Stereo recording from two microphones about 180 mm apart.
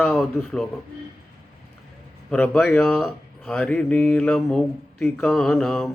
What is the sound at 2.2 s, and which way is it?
Speech, 5° left (ahead or behind).